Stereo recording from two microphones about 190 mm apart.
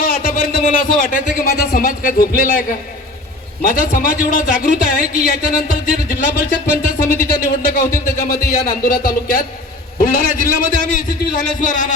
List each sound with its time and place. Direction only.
0.0 s a man's voice: 50° left (ahead or behind)